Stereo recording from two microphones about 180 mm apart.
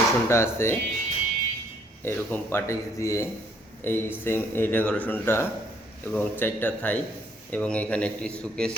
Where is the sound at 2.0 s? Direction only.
10° left (ahead or behind).